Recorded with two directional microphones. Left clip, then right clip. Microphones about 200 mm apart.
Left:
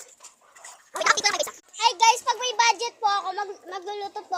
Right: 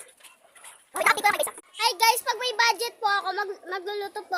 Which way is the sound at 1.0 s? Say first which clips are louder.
Even; 10° left (ahead or behind).